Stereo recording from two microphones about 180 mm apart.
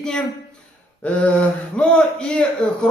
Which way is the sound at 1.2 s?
5° left (ahead or behind).